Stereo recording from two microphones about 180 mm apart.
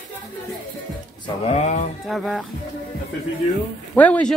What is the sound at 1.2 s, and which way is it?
Speech, 35° left (ahead or behind).